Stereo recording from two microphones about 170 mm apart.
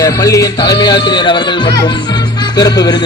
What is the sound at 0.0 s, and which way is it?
Music, 20° left (ahead or behind).